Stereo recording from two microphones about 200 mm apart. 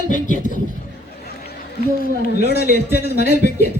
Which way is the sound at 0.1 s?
40° left (ahead or behind).